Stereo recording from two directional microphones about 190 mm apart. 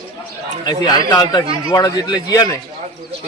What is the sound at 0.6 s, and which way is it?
Speech, 20° left (ahead or behind).